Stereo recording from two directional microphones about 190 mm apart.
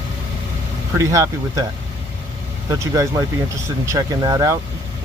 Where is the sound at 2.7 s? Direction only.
20° right (ahead or behind).